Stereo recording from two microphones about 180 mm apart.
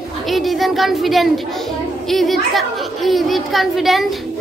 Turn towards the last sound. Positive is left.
turn(degrees=0)  # may be behind; listen again after turning